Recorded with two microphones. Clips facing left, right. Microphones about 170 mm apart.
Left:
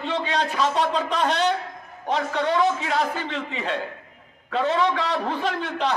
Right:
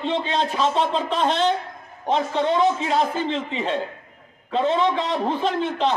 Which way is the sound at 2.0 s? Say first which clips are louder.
Right 3 dB; 25° right (ahead or behind).